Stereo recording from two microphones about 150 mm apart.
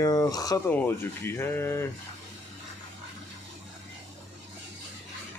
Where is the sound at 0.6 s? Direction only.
15° left (ahead or behind).